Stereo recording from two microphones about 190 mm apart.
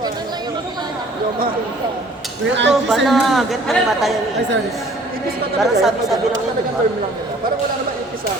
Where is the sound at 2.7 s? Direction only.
Centre (ahead or behind).